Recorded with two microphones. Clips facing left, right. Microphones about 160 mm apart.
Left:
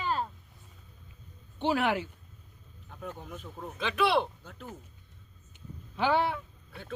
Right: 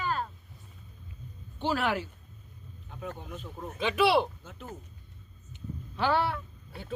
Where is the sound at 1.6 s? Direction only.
15° left (ahead or behind).